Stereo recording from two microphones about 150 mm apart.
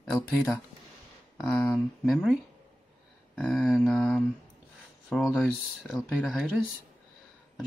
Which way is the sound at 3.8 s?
10° left (ahead or behind).